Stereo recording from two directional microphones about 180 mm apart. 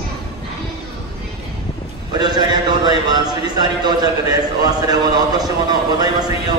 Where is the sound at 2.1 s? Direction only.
25° right (ahead or behind).